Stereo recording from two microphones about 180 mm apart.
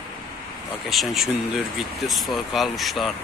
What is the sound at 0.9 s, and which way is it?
Speech, centre (ahead or behind).